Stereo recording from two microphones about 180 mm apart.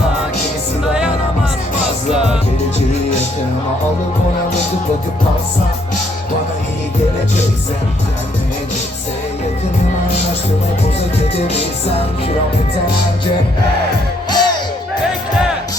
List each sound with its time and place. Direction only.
2.1 s music: 5° right (ahead or behind)
11.3 s music: 35° left (ahead or behind)
14.3 s music: 25° left (ahead or behind)